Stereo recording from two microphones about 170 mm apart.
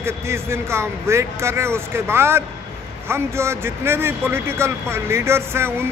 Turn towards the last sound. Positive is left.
turn(degrees=-15)  # may be behind; listen again after turning